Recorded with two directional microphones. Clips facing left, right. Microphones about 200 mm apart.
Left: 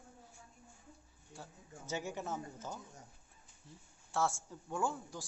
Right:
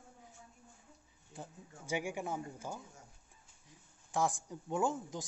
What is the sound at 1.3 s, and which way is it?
Speech, 15° right (ahead or behind).